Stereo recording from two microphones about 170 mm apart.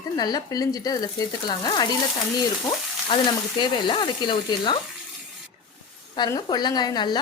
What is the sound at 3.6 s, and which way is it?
Speech, 30° left (ahead or behind).